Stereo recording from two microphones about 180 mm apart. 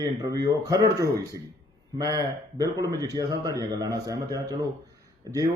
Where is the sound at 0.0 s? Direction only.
20° right (ahead or behind).